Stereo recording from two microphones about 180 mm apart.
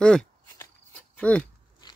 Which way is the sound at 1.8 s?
25° left (ahead or behind).